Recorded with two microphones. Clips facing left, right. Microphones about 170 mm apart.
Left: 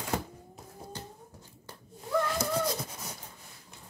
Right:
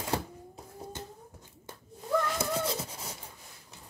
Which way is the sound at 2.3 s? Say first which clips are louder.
Left 1 dB; 25° right (ahead or behind).